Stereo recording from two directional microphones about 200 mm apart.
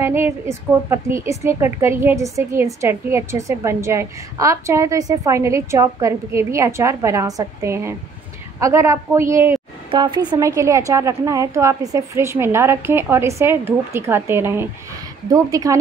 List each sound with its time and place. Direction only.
0.0 s a woman's voice: 10° right (ahead or behind)